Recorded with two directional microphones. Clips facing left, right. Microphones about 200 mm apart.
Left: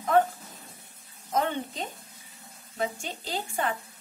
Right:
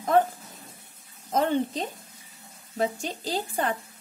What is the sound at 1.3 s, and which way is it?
Speech, 40° right (ahead or behind).